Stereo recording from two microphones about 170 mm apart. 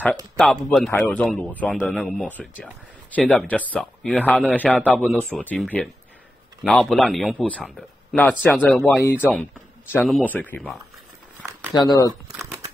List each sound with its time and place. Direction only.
0.7 s a man's voice: centre (ahead or behind)
11.7 s speech: 20° left (ahead or behind)